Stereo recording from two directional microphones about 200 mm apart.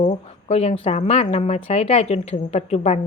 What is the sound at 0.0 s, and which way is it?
Speech, 30° left (ahead or behind).